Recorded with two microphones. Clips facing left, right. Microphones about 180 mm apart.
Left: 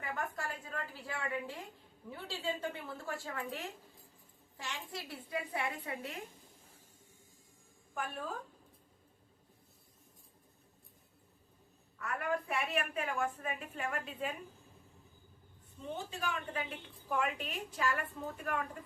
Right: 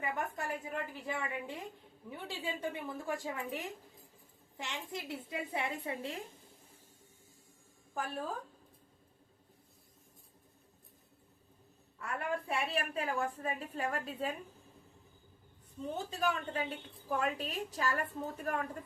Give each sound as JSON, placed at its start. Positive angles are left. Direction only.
{"t": 0.0, "sound": "a sound", "side_deg": -20}
{"t": 2.0, "sound": "a woman's voice", "side_deg": -15}
{"t": 7.9, "sound": "a woman's voice", "side_deg": -35}
{"t": 11.9, "sound": "a woman's voice", "side_deg": -30}
{"t": 15.8, "sound": "a woman's voice", "side_deg": -40}